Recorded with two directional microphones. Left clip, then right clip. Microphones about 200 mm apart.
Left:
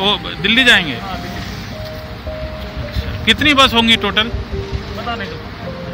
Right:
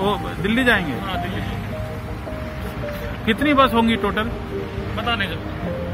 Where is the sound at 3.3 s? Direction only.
15° left (ahead or behind).